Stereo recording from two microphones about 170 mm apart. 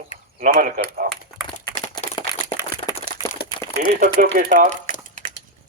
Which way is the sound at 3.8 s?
60° right (ahead or behind).